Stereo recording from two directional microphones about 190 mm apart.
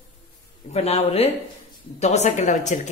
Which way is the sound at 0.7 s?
35° left (ahead or behind).